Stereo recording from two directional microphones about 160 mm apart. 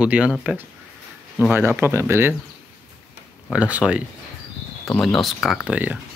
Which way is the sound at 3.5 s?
10° right (ahead or behind).